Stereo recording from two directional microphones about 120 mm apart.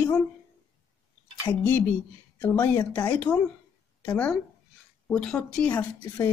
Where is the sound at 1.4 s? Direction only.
20° left (ahead or behind).